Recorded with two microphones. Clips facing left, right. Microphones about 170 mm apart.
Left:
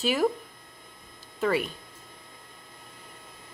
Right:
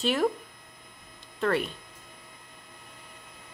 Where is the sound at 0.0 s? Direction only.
Centre (ahead or behind).